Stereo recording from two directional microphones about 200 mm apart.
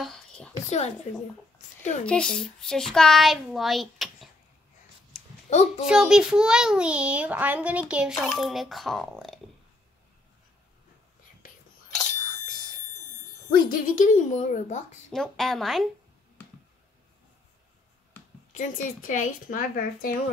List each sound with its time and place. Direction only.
0.0 s a sound: 5° left (ahead or behind)
0.7 s a woman's voice: 35° left (ahead or behind)
2.0 s a child's voice: 5° left (ahead or behind)
5.1 s a sound: centre (ahead or behind)
5.5 s a woman's voice: 35° left (ahead or behind)
5.9 s a child's voice: 5° right (ahead or behind)
13.6 s a woman's voice: 45° left (ahead or behind)
15.0 s a child's voice: centre (ahead or behind)
18.5 s a woman's voice: 40° left (ahead or behind)